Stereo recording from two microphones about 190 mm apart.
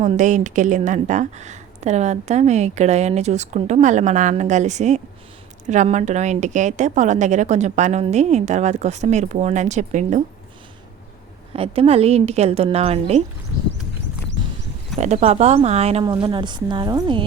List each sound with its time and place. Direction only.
0.0 s a woman's voice: 40° right (ahead or behind)
11.5 s a woman's voice: 30° right (ahead or behind)
14.9 s speech: 35° right (ahead or behind)